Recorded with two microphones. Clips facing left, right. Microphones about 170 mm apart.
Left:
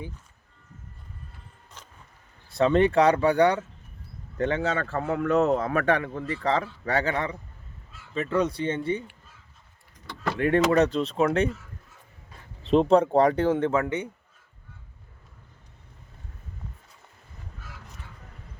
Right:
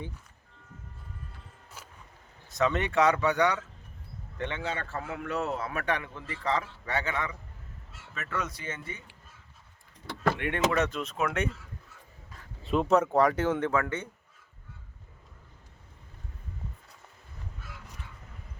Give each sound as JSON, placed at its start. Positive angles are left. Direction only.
{"t": 1.8, "sound": "music", "side_deg": -10}
{"t": 2.5, "sound": "a man's voice", "side_deg": 30}
{"t": 10.3, "sound": "a man's voice", "side_deg": 35}
{"t": 12.7, "sound": "speech", "side_deg": 30}